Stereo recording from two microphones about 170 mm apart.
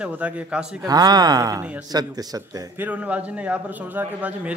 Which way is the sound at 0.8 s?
25° right (ahead or behind).